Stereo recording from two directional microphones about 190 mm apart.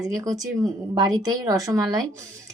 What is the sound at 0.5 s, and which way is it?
A woman's voice, 20° right (ahead or behind).